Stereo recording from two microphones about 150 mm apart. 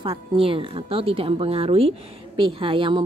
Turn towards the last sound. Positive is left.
turn(degrees=-35)  # may be behind; listen again after turning